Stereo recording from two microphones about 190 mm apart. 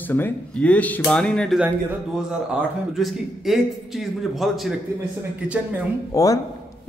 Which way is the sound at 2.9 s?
Centre (ahead or behind).